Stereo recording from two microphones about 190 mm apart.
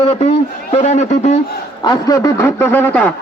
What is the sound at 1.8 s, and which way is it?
Speech, 20° left (ahead or behind).